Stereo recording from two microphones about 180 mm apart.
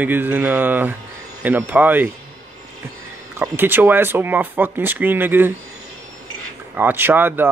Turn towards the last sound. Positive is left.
turn(degrees=-10)  # may be behind; listen again after turning